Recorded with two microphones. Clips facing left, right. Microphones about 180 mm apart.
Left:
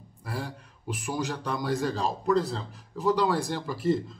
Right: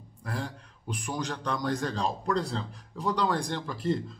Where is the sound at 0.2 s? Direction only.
5° left (ahead or behind).